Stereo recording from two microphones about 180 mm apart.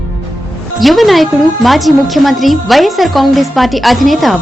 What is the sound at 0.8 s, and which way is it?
A woman's voice, centre (ahead or behind).